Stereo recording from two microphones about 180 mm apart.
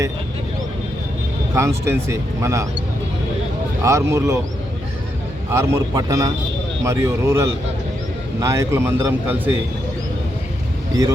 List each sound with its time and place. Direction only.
1.5 s speech: 15° right (ahead or behind)
3.8 s speech: 15° right (ahead or behind)
5.5 s speech: 15° right (ahead or behind)